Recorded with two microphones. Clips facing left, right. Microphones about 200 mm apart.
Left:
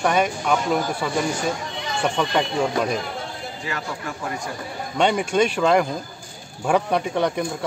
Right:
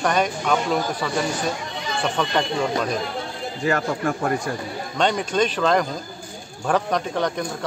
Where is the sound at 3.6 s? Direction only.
50° right (ahead or behind).